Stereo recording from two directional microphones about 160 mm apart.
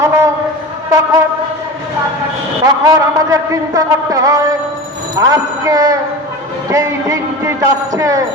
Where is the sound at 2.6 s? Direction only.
20° right (ahead or behind).